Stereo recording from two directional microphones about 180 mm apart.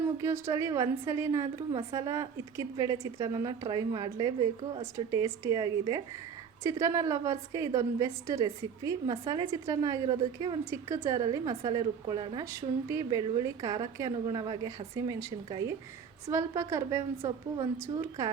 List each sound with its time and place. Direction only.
0.2 s a woman's voice: 15° right (ahead or behind)
4.9 s a woman's voice: 15° right (ahead or behind)